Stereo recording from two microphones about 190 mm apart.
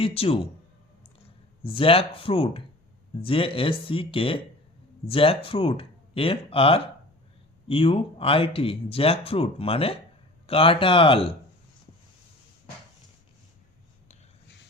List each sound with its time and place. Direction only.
0.0 s speech: 30° left (ahead or behind)
1.6 s speech: 30° left (ahead or behind)